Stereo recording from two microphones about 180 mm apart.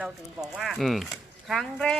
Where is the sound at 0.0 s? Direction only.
Centre (ahead or behind).